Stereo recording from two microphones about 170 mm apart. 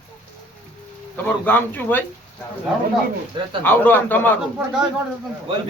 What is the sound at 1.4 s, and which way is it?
Speech, 10° left (ahead or behind).